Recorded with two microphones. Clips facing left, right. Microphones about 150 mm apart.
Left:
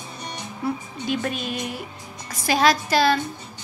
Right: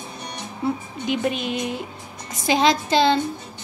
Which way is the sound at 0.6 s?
20° right (ahead or behind).